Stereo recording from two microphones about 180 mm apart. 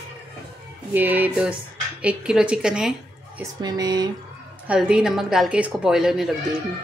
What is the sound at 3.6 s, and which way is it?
Speech, 25° right (ahead or behind).